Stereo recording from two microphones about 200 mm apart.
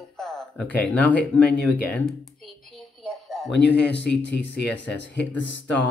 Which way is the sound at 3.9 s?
60° left (ahead or behind).